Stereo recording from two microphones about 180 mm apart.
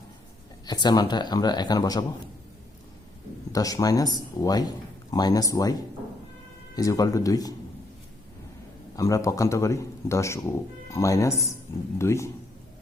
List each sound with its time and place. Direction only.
0.6 s a man's voice: 25° left (ahead or behind)
3.5 s a man's voice: 20° left (ahead or behind)
6.7 s a man's voice: 20° left (ahead or behind)
9.0 s speech: 20° left (ahead or behind)